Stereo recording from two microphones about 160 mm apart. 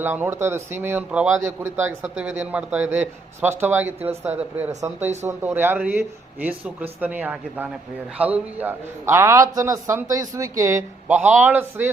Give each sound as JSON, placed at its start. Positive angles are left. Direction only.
{"t": 0.0, "sound": "a man's voice", "side_deg": -15}